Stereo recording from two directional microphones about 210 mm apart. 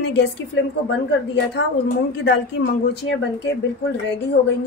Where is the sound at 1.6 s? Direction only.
55° left (ahead or behind).